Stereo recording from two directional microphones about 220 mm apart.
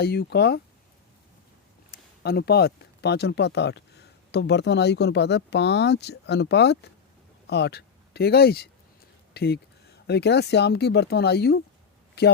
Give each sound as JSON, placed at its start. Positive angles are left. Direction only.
{"t": 0.0, "sound": "speech", "side_deg": 45}
{"t": 1.9, "sound": "speech", "side_deg": 45}